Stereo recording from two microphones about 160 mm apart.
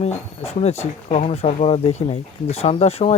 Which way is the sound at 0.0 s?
40° left (ahead or behind).